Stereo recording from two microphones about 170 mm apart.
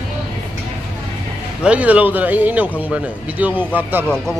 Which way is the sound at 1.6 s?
5° right (ahead or behind).